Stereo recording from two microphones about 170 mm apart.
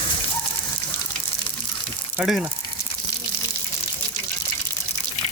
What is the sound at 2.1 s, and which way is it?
Speech, 5° right (ahead or behind).